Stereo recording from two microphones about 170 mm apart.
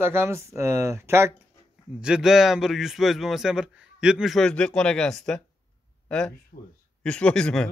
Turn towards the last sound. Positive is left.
turn(degrees=5)  # may be behind; listen again after turning